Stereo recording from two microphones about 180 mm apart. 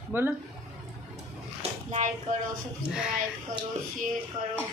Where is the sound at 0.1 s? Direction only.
10° right (ahead or behind).